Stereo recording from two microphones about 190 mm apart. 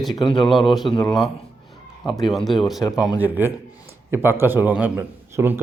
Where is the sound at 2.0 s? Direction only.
25° left (ahead or behind).